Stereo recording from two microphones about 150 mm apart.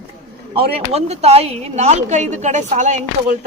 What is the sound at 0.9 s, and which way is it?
A woman's voice, 45° right (ahead or behind).